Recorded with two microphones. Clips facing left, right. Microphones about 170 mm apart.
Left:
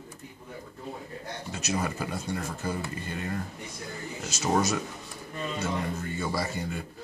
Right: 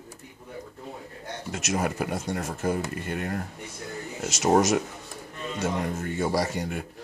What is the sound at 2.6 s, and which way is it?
Speech, 75° right (ahead or behind).